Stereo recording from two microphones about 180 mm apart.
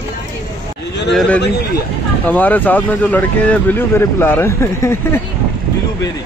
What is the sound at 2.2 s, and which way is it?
Speech, 10° left (ahead or behind).